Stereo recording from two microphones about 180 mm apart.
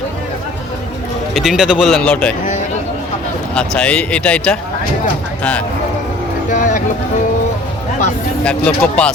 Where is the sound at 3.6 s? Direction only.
5° left (ahead or behind).